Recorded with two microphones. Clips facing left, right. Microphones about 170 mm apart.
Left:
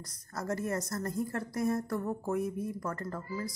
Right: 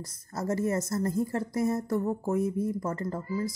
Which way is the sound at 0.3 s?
25° right (ahead or behind).